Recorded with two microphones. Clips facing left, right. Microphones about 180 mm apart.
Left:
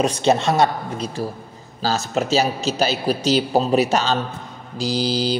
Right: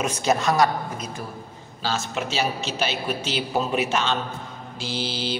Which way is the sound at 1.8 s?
40° left (ahead or behind).